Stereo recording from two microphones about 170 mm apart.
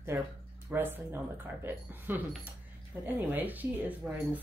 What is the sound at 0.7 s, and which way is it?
Speech, 10° right (ahead or behind).